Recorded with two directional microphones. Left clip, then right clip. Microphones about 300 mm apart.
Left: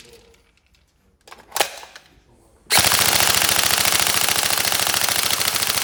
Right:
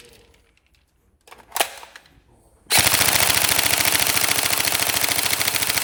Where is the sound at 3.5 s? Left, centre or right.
Centre.